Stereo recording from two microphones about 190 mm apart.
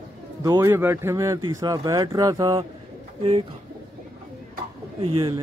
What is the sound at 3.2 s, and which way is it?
Speech, 30° right (ahead or behind).